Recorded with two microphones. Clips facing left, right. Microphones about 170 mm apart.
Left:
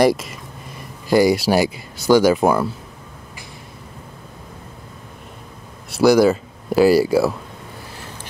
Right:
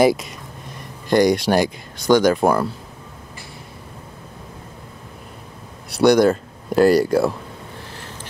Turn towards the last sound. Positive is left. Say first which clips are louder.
# left 1 dB
turn(degrees=5)  # may be behind; listen again after turning